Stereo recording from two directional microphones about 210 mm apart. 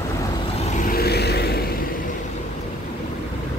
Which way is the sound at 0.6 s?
40° left (ahead or behind).